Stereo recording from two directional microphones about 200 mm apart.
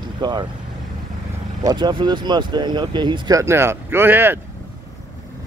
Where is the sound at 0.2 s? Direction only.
20° right (ahead or behind).